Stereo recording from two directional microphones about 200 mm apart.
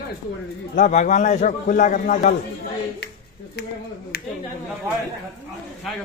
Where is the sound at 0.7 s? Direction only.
35° left (ahead or behind).